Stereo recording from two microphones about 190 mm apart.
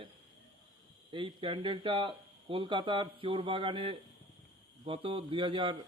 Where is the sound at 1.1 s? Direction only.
25° right (ahead or behind).